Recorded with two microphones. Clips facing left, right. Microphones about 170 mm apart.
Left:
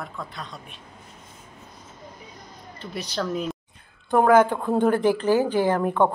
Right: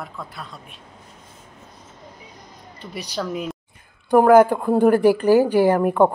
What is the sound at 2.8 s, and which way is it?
Speech, 15° right (ahead or behind).